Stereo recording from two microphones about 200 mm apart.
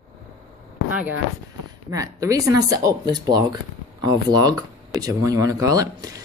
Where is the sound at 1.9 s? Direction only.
15° right (ahead or behind).